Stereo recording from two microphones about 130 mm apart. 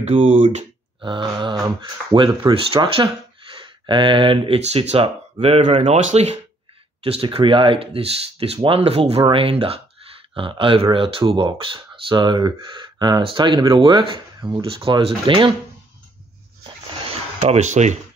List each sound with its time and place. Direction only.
0.0 s speech: 60° right (ahead or behind)
1.0 s speech: 40° right (ahead or behind); by 6.3 s 60° right (ahead or behind)
7.0 s speech: 45° right (ahead or behind)
17.0 s a sound: 50° right (ahead or behind)